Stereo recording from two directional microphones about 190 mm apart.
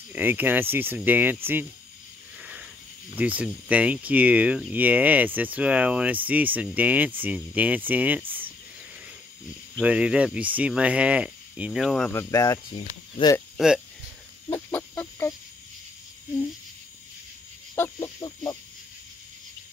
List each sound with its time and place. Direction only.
0.1 s speech: 10° right (ahead or behind)
2.3 s a sound: 5° right (ahead or behind)
3.2 s speech: 10° right (ahead or behind)
9.8 s speech: 5° right (ahead or behind)
12.1 s speech: 15° left (ahead or behind)
13.6 s speech: centre (ahead or behind)
14.5 s chicken: 10° left (ahead or behind)
17.9 s speech: 25° left (ahead or behind)